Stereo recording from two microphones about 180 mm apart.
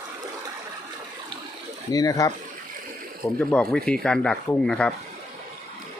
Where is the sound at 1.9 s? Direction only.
20° left (ahead or behind).